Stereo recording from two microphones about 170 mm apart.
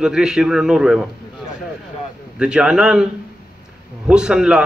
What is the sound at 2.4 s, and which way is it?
Speech, 5° right (ahead or behind).